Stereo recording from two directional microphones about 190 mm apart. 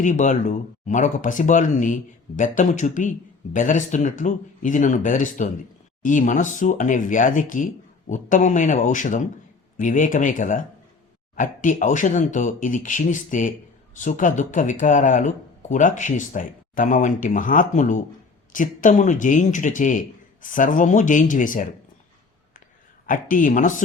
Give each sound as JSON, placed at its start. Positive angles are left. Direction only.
{"t": 0.0, "sound": "speech", "side_deg": 40}
{"t": 23.0, "sound": "speech", "side_deg": 45}